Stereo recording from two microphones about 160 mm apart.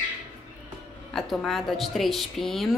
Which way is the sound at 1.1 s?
Centre (ahead or behind).